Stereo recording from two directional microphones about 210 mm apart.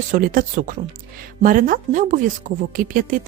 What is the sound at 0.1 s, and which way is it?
A woman's voice, 40° right (ahead or behind).